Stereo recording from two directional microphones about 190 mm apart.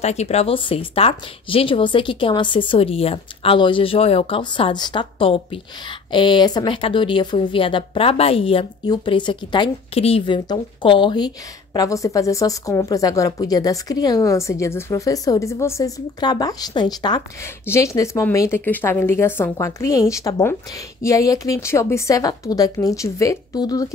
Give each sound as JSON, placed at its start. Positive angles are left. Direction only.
{"t": 0.0, "sound": "a woman's voice", "side_deg": 35}